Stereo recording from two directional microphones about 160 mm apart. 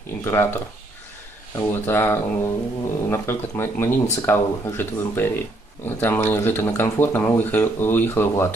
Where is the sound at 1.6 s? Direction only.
15° left (ahead or behind).